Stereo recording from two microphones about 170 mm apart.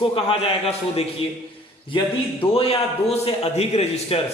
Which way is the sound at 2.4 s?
35° left (ahead or behind).